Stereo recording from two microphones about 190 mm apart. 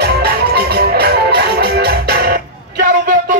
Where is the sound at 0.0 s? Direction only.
60° right (ahead or behind).